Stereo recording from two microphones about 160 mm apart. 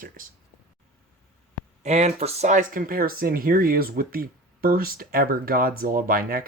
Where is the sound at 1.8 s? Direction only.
45° right (ahead or behind); by 6.4 s 65° right (ahead or behind).